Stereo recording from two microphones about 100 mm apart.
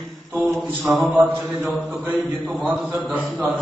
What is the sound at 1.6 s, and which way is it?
A man's voice, 15° right (ahead or behind).